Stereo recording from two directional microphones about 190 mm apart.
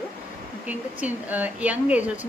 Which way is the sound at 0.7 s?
10° right (ahead or behind).